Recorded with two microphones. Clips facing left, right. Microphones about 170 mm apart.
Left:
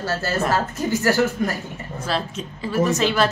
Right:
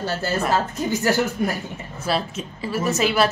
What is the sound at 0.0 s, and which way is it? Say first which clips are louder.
Speech: even; 20° right (ahead or behind).